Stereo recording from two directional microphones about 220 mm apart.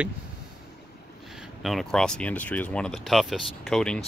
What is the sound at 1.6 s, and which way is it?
Speech, centre (ahead or behind).